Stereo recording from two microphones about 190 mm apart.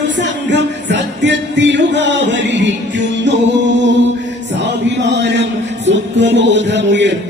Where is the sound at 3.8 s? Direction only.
70° right (ahead or behind).